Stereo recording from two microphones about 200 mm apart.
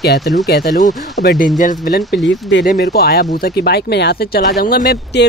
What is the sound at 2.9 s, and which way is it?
Speech, 55° left (ahead or behind).